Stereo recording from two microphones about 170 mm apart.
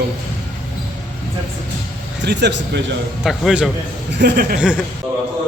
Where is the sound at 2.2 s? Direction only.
85° right.